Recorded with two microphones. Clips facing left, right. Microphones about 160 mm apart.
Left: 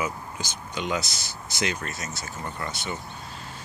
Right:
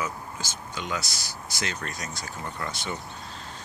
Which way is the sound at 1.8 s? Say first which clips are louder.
Left 1 dB; centre (ahead or behind).